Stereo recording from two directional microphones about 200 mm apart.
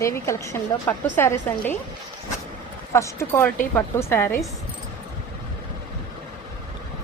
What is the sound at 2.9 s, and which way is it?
A woman's voice, 15° left (ahead or behind).